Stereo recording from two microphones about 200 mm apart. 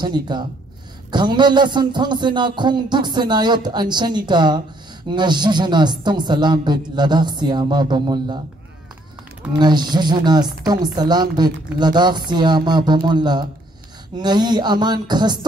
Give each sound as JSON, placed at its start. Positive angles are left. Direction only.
{"t": 0.0, "sound": "a woman's voice", "side_deg": -20}
{"t": 9.5, "sound": "a woman's voice", "side_deg": -20}